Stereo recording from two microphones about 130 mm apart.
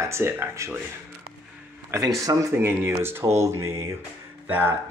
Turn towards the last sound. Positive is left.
turn(degrees=-15)  # may be behind; listen again after turning